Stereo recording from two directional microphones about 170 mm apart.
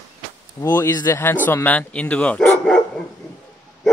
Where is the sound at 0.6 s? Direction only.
15° left (ahead or behind).